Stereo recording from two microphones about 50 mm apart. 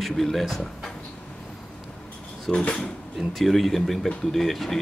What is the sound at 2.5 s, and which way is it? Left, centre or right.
Speech, centre.